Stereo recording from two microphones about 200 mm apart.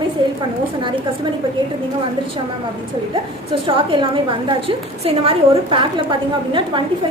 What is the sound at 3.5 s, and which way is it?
A woman's voice, 25° right (ahead or behind).